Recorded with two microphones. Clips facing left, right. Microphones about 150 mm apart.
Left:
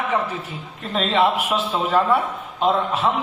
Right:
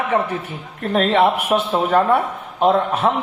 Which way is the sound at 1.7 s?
50° right (ahead or behind).